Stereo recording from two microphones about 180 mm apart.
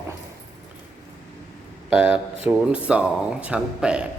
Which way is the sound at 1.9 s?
10° right (ahead or behind).